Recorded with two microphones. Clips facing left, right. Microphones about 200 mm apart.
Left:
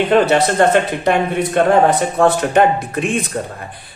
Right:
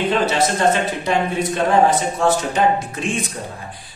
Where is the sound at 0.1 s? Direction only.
60° left (ahead or behind).